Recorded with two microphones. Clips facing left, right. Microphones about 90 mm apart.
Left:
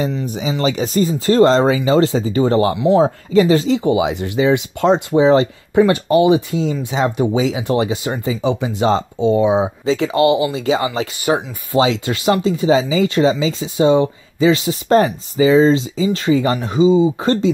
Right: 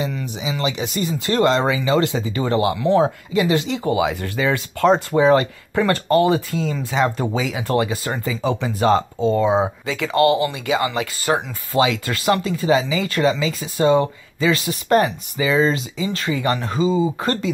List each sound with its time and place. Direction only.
0.0 s speech: 40° left (ahead or behind)
2.8 s speech: 20° left (ahead or behind)
3.3 s speech: 35° left (ahead or behind)
3.8 s speech: 20° left (ahead or behind)